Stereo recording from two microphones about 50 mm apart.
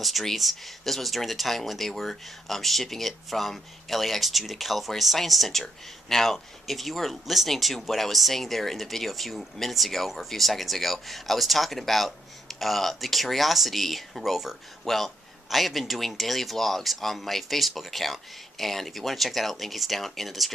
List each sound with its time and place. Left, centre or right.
0.0 s speech: centre